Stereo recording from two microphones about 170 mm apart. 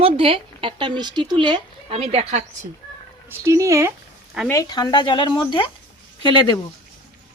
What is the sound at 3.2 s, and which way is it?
Speech, 15° right (ahead or behind).